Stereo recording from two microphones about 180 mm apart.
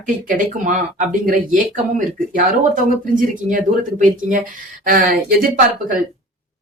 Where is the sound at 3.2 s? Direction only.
50° right (ahead or behind).